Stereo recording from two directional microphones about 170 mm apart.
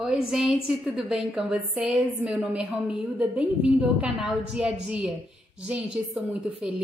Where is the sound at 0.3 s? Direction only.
Centre (ahead or behind).